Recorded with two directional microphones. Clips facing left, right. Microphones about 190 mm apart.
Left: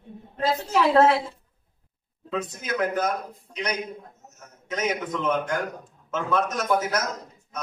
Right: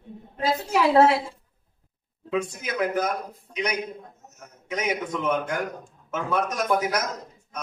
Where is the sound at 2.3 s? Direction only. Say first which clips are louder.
Right 1 dB; 10° right (ahead or behind).